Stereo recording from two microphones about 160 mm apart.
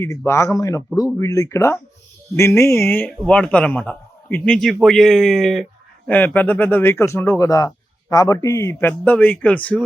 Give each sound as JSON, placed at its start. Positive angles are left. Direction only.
{"t": 0.3, "sound": "a man's voice", "side_deg": 20}
{"t": 6.1, "sound": "a man's voice", "side_deg": 10}